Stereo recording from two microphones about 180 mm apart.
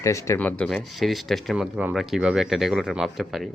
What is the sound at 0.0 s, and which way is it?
Speech, 15° left (ahead or behind).